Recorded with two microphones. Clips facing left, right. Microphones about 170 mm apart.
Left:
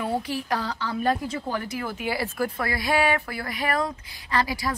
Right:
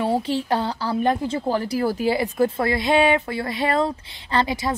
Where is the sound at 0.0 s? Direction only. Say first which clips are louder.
Right 6 dB; 30° right (ahead or behind).